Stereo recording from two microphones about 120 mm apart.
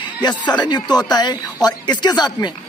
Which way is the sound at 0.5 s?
35° left (ahead or behind).